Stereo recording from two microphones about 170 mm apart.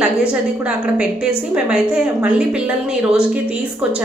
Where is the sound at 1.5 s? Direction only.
5° right (ahead or behind).